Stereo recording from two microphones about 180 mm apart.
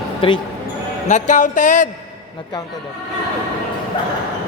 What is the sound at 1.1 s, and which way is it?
Speech, 45° left (ahead or behind).